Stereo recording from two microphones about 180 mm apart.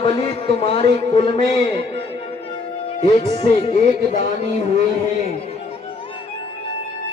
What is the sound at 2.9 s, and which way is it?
Speech, 25° left (ahead or behind).